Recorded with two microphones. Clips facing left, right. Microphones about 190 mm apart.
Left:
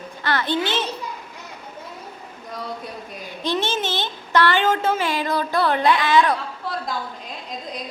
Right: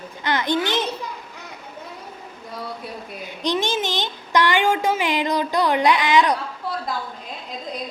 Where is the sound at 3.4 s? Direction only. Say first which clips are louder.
Right 1 dB; 15° right (ahead or behind).